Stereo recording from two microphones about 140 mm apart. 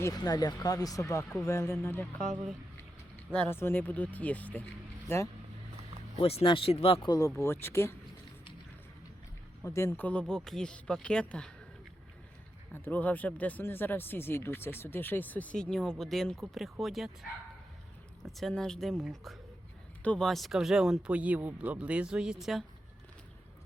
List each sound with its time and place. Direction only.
0.0 s speech: 25° left (ahead or behind)
3.3 s speech: 15° left (ahead or behind)
6.1 s speech: 45° left (ahead or behind)
7.3 s speech: 15° left (ahead or behind)
9.6 s speech: 20° left (ahead or behind)
12.7 s speech: 15° left (ahead or behind)
18.3 s speech: centre (ahead or behind)